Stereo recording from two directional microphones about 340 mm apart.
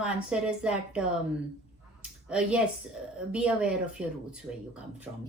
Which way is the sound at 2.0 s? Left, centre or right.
Centre.